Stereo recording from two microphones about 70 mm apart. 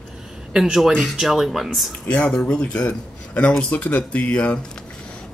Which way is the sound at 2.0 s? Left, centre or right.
Centre.